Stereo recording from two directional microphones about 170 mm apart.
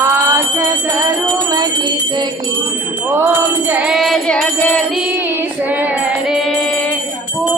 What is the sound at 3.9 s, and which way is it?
Music, centre (ahead or behind).